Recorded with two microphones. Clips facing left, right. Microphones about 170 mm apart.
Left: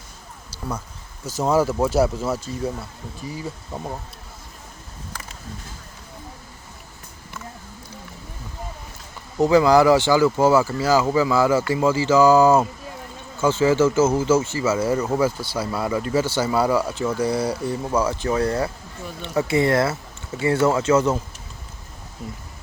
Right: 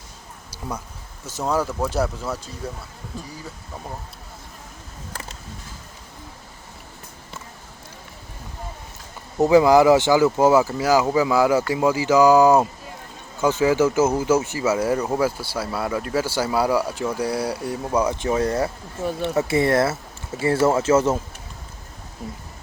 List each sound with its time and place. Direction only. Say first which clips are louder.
1.4 s speech: left 4 dB; 5° left (ahead or behind)
9.4 s speech: right 1 dB; 20° right (ahead or behind)